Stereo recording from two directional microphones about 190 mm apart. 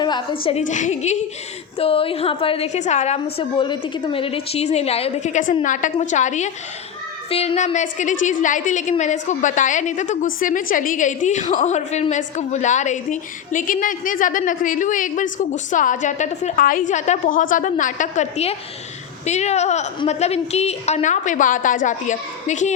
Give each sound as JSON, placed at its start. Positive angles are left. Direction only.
{"t": 0.0, "sound": "a woman's voice", "side_deg": 20}
{"t": 0.5, "sound": "a woman's voice", "side_deg": 40}
{"t": 3.3, "sound": "a woman's voice", "side_deg": 25}